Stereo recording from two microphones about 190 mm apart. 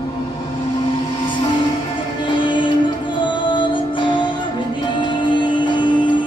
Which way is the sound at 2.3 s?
25° left (ahead or behind).